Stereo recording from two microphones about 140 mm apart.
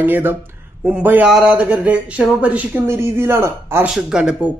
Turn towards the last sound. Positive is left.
turn(degrees=-5)  # may be behind; listen again after turning